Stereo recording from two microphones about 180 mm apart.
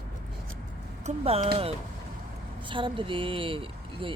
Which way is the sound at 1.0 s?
35° right (ahead or behind).